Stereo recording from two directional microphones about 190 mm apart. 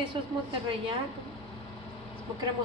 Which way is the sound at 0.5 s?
25° right (ahead or behind).